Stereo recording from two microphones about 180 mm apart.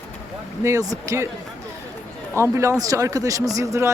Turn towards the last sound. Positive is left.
turn(degrees=-15)  # may be behind; listen again after turning